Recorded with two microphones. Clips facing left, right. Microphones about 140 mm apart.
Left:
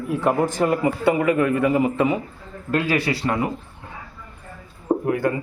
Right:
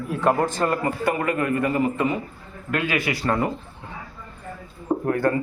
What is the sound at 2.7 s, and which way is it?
Speech, 35° left (ahead or behind).